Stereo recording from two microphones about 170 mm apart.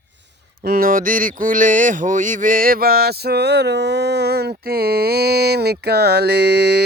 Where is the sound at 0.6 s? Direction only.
60° right (ahead or behind).